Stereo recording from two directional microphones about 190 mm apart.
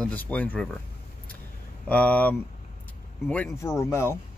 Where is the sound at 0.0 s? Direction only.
10° left (ahead or behind).